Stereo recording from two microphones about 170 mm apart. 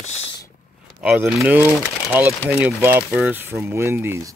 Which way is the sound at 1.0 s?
5° right (ahead or behind).